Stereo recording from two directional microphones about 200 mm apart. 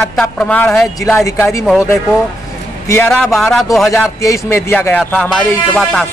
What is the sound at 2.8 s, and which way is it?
Speech, 10° left (ahead or behind).